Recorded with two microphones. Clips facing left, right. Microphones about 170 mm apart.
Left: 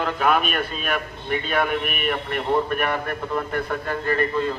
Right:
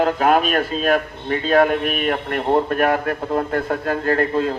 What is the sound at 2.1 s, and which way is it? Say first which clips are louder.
Speech: right 4 dB; 65° right (ahead or behind).